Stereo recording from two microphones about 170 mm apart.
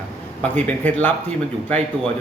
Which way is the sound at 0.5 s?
10° left (ahead or behind).